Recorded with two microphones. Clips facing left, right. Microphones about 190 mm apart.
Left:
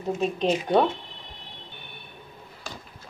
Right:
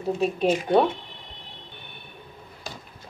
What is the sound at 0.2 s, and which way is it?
Speech, 10° right (ahead or behind).